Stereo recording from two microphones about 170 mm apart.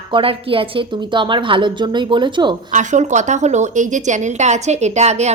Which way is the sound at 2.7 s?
45° right (ahead or behind).